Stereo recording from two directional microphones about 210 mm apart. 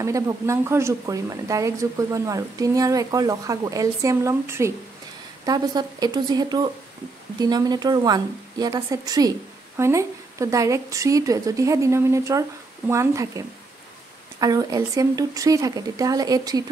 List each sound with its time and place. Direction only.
0.0 s a woman's voice: 15° right (ahead or behind)